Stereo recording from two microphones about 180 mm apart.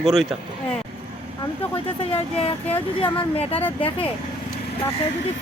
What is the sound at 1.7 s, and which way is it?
Speech, 35° left (ahead or behind).